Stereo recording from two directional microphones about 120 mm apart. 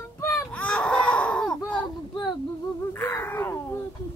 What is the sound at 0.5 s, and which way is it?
Baby cry, 10° left (ahead or behind).